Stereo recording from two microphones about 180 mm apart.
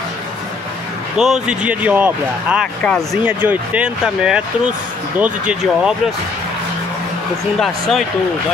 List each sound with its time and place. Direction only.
1.1 s speech: 5° right (ahead or behind)
2.8 s speech: 5° left (ahead or behind)
3.3 s speech: 10° right (ahead or behind)